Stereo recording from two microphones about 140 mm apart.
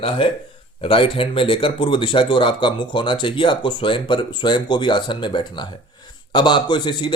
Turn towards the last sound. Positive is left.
turn(degrees=35)  # may be behind; listen again after turning